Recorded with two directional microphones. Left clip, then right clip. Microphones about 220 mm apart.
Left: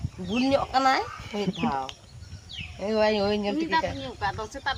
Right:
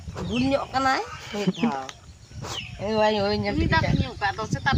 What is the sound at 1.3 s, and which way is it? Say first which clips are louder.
Speech: right 2 dB; 20° right (ahead or behind).